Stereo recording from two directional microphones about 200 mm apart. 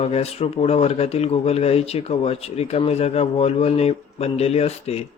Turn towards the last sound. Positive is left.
turn(degrees=30)  # may be behind; listen again after turning